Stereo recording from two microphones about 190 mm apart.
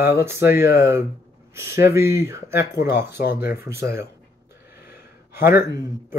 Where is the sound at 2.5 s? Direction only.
55° left (ahead or behind).